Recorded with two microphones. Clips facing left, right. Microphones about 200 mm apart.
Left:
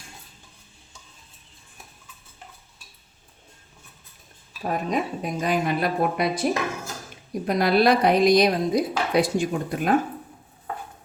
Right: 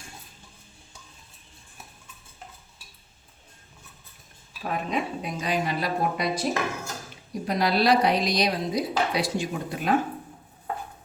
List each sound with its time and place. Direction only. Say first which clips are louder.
4.7 s a woman's voice: left 3 dB; 45° left (ahead or behind)